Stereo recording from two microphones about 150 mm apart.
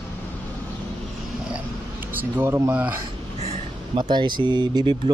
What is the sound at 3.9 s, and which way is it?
Speech, 30° right (ahead or behind).